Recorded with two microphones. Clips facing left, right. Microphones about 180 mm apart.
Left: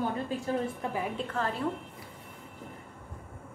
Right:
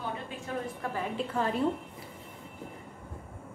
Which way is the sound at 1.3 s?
15° right (ahead or behind).